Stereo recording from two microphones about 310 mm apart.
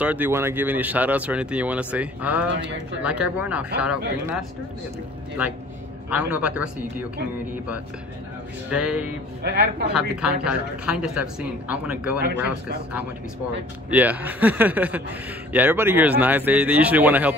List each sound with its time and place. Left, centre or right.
0.0 s speech: centre
6.0 s speech: centre
8.6 s speech: centre
9.4 s speech: right
9.9 s speech: centre
13.8 s speech: centre